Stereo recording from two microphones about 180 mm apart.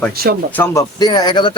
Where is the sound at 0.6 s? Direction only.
20° left (ahead or behind).